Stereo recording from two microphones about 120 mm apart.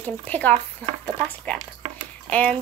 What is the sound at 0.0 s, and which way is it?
Speech, 15° left (ahead or behind).